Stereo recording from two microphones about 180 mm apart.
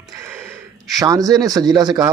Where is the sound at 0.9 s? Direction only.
20° right (ahead or behind).